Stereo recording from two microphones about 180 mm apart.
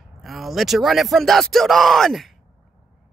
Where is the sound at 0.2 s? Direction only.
Centre (ahead or behind).